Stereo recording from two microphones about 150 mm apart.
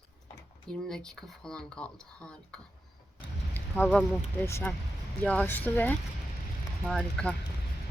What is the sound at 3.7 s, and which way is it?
Speech, 15° left (ahead or behind).